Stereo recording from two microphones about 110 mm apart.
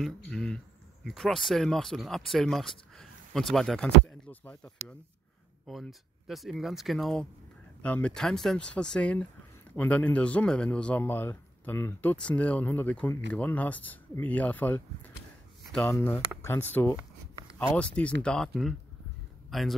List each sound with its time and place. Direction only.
0.0 s speech: 10° left (ahead or behind)
5.7 s speech: centre (ahead or behind); by 14.8 s 15° left (ahead or behind)
15.9 s speech: 20° left (ahead or behind); by 19.7 s centre (ahead or behind)